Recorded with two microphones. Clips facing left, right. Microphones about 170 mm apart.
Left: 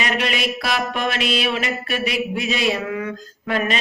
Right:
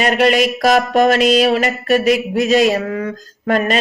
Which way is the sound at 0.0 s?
45° right (ahead or behind).